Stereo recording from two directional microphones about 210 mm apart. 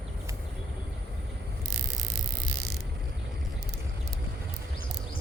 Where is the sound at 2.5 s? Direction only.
50° right (ahead or behind).